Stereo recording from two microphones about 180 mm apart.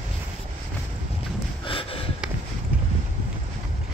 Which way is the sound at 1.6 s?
30° left (ahead or behind).